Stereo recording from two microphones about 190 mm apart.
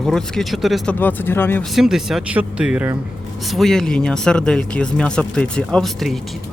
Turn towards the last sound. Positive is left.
turn(degrees=0)  # may be behind; listen again after turning